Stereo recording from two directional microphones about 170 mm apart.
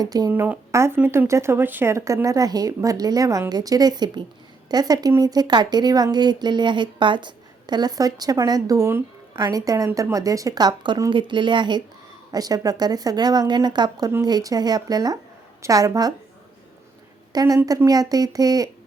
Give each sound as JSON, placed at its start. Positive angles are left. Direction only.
{"t": 0.0, "sound": "speech", "side_deg": -20}
{"t": 17.3, "sound": "speech", "side_deg": -20}